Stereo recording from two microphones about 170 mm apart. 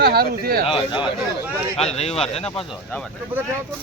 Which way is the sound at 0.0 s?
65° right (ahead or behind).